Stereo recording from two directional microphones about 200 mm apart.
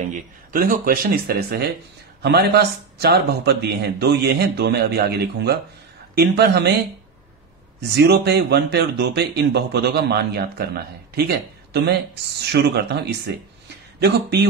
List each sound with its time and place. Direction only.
0.0 s a man's voice: 40° right (ahead or behind); by 6.7 s 55° right (ahead or behind)
7.9 s a man's voice: 55° right (ahead or behind)